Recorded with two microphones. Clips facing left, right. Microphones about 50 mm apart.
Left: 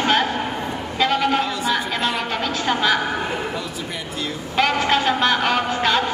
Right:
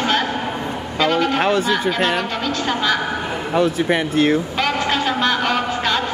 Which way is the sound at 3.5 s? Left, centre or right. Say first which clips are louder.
Right 11 dB; right.